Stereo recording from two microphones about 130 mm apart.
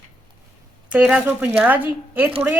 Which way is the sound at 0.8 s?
10° right (ahead or behind).